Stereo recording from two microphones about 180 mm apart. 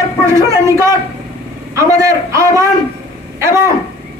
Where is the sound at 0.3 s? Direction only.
15° right (ahead or behind).